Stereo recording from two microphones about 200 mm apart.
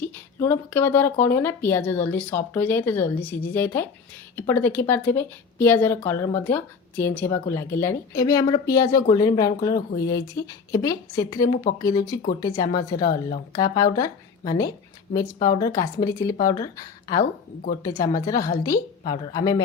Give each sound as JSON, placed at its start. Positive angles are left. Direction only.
{"t": 0.0, "sound": "a woman's voice", "side_deg": 10}